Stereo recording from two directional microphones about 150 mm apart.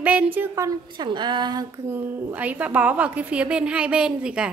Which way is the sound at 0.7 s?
30° right (ahead or behind).